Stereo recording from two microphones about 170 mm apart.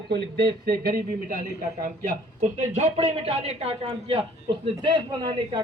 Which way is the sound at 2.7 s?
40° right (ahead or behind).